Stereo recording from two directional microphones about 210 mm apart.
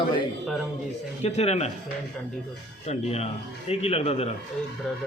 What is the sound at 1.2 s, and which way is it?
Speech, 30° left (ahead or behind).